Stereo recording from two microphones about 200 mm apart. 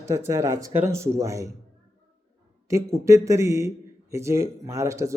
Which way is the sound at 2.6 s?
15° right (ahead or behind).